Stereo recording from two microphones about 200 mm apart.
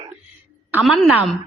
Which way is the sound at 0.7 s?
5° right (ahead or behind).